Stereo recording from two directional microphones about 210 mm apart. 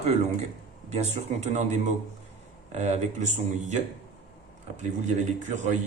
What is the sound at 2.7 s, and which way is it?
Speech, 30° right (ahead or behind).